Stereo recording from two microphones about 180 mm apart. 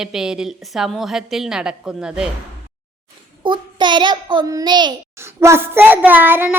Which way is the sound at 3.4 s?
25° right (ahead or behind).